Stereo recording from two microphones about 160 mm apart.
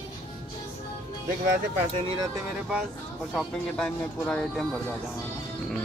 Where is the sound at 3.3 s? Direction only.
5° left (ahead or behind).